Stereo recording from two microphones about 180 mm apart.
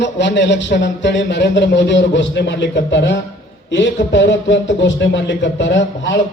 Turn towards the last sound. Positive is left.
turn(degrees=80)